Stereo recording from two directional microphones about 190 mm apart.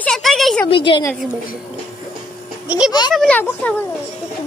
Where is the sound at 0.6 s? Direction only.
25° left (ahead or behind).